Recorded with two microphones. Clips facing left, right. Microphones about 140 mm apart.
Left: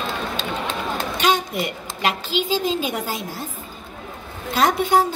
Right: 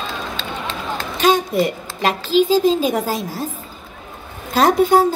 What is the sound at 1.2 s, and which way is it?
A woman's voice, 40° right (ahead or behind).